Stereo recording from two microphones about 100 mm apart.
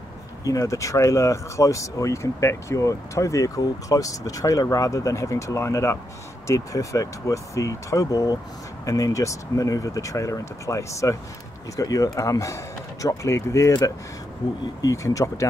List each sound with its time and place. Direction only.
0.4 s speech: 35° left (ahead or behind)
14.8 s speech: 35° left (ahead or behind)